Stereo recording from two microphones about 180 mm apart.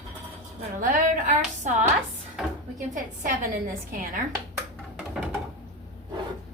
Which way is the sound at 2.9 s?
50° right (ahead or behind).